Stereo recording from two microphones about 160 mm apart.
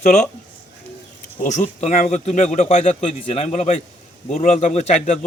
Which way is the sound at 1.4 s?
50° left (ahead or behind).